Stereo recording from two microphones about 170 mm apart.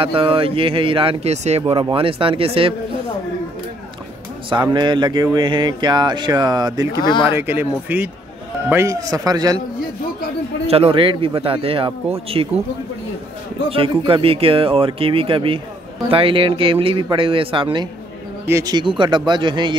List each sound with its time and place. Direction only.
0.0 s speech: 30° right (ahead or behind)
4.7 s speech: 25° right (ahead or behind)
10.7 s speech: 35° right (ahead or behind)
13.7 s speech: 30° right (ahead or behind)